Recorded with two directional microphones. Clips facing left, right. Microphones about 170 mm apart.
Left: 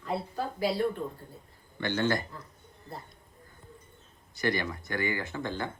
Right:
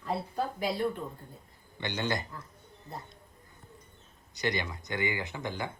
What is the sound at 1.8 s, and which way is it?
Speech, 15° right (ahead or behind).